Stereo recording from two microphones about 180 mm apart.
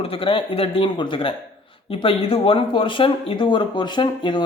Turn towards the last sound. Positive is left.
turn(degrees=25)  # may be behind; listen again after turning